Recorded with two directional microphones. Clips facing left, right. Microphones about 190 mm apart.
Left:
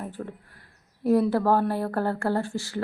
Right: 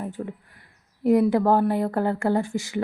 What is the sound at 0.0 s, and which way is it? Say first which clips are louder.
Speech: right 3 dB; 15° right (ahead or behind).